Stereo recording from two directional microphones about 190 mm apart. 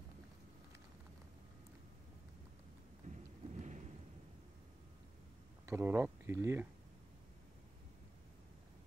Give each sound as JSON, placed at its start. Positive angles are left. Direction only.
{"t": 3.0, "sound": "thunder", "side_deg": -40}
{"t": 5.7, "sound": "speech", "side_deg": -10}